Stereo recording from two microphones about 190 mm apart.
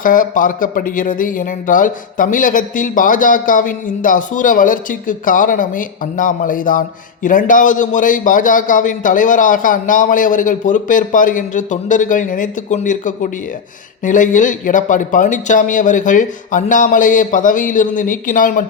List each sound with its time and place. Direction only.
0.0 s speech: 45° left (ahead or behind)